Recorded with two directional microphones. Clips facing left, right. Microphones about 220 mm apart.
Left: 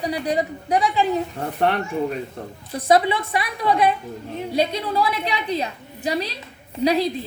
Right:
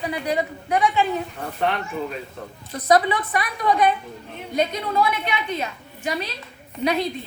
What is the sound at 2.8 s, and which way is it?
A woman's voice, 25° left (ahead or behind).